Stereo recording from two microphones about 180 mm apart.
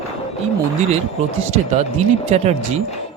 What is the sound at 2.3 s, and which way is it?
Speech, 35° right (ahead or behind).